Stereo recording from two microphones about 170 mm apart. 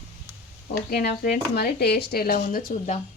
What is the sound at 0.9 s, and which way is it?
Speech, 70° left (ahead or behind).